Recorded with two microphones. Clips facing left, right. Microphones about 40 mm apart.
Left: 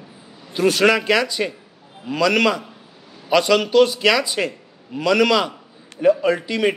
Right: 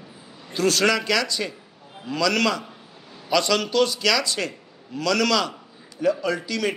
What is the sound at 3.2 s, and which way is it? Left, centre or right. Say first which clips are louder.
Speech: left 5 dB; centre.